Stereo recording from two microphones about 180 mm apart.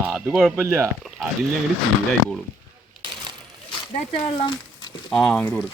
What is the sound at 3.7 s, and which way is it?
Speech, 30° left (ahead or behind).